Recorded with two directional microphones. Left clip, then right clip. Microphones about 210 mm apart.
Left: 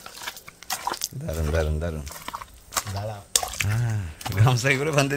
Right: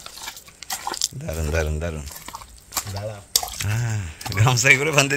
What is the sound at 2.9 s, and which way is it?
Speech, 20° left (ahead or behind).